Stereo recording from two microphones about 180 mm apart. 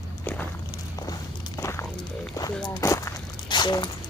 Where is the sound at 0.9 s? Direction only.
20° left (ahead or behind).